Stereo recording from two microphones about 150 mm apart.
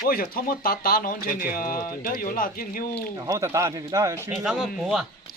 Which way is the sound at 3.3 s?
20° right (ahead or behind).